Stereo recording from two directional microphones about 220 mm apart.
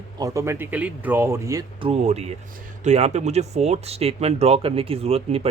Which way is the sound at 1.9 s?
30° right (ahead or behind).